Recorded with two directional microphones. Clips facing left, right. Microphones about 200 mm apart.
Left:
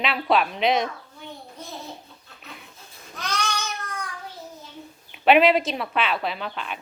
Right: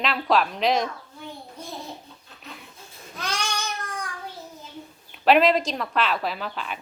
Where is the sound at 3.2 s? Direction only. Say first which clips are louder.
Left 1 dB; 10° right (ahead or behind).